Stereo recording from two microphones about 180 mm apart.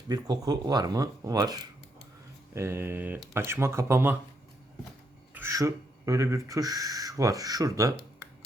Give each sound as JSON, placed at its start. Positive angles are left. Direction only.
{"t": 0.1, "sound": "speech", "side_deg": -20}
{"t": 5.3, "sound": "speech", "side_deg": -15}